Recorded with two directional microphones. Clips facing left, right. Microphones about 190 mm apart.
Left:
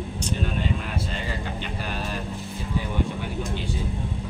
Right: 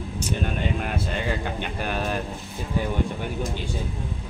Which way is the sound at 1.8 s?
55° right (ahead or behind).